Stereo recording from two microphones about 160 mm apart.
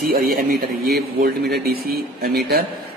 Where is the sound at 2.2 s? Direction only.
75° right (ahead or behind).